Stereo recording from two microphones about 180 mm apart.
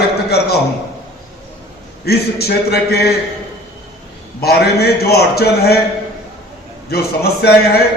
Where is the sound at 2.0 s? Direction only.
60° left (ahead or behind).